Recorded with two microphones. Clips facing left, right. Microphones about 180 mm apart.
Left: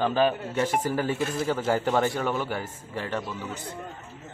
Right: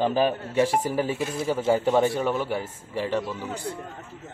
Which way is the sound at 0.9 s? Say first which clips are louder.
Right 1 dB; 5° right (ahead or behind).